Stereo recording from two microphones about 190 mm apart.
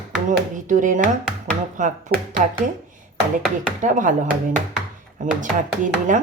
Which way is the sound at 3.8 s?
45° right (ahead or behind).